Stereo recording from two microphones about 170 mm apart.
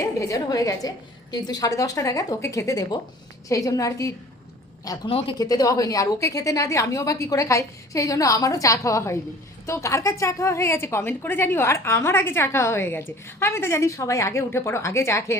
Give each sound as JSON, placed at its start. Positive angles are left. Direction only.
{"t": 0.2, "sound": "a woman's voice", "side_deg": 20}